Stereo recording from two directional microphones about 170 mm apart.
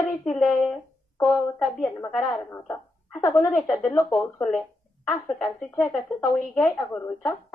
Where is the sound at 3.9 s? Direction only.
20° left (ahead or behind).